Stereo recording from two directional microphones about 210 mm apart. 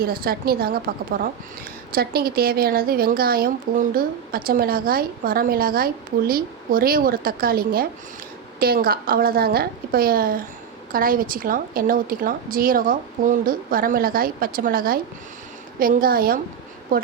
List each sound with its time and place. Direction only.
0.0 s a woman's voice: 45° right (ahead or behind)